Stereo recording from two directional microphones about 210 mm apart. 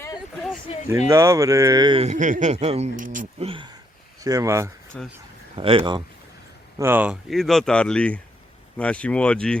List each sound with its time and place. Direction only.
1.0 s speech: 15° right (ahead or behind)
4.9 s speech: centre (ahead or behind)
5.5 s speech: 25° right (ahead or behind)
6.7 s speech: 10° right (ahead or behind)